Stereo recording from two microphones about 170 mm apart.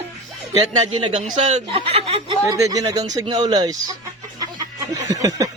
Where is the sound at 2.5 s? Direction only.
20° right (ahead or behind).